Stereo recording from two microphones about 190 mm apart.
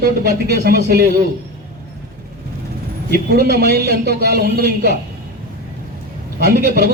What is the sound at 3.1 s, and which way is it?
A man's voice, 55° right (ahead or behind).